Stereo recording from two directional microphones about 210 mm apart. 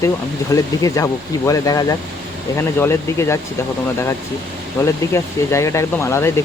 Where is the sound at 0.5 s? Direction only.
15° left (ahead or behind).